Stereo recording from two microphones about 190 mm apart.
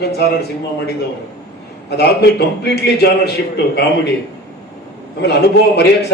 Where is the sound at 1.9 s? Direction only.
60° left (ahead or behind).